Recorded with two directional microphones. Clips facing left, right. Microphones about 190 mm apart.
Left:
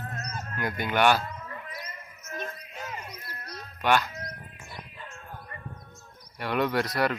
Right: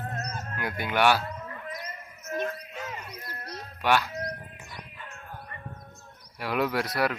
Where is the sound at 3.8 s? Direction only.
5° right (ahead or behind).